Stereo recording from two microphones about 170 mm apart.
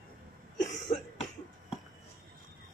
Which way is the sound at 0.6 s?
45° left (ahead or behind).